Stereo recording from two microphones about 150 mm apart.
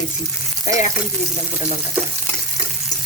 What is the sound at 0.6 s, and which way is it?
Frying, 55° left (ahead or behind).